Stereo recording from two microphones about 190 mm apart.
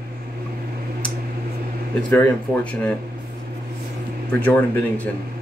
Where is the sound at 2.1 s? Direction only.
10° left (ahead or behind).